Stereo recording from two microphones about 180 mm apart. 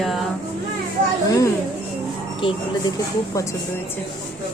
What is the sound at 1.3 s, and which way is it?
Speech, 20° left (ahead or behind).